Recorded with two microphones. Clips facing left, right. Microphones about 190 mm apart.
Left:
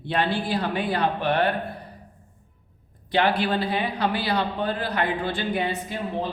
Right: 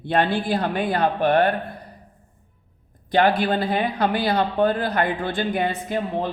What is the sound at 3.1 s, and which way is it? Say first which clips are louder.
Speech: right 3 dB; 45° right (ahead or behind).